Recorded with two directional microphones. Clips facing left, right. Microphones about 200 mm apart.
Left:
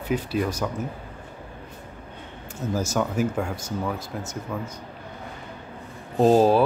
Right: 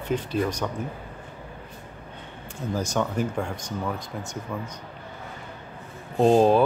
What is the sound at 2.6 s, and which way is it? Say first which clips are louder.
Speech: left 1 dB; 5° left (ahead or behind).